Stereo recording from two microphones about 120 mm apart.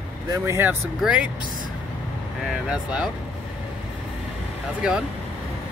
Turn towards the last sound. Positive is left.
turn(degrees=-10)  # may be behind; listen again after turning